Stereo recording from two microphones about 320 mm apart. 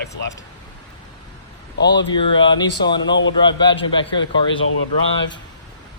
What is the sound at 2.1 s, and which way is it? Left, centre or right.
Speech, centre.